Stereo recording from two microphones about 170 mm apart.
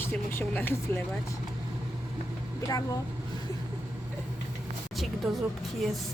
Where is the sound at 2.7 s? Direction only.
20° left (ahead or behind).